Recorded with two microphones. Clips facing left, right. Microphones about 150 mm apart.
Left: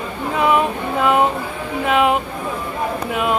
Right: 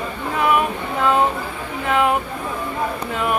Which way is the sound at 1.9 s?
20° left (ahead or behind).